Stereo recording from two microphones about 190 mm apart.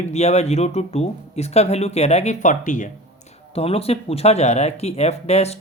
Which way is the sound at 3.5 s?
30° left (ahead or behind).